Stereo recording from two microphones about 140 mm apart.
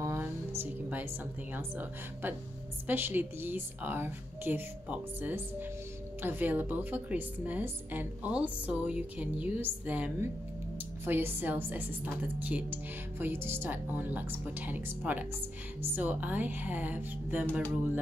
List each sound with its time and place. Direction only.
0.0 s music: 20° right (ahead or behind)
0.6 s a woman's voice: 10° right (ahead or behind)